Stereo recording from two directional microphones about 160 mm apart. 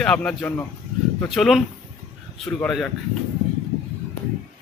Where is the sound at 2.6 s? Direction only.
Centre (ahead or behind).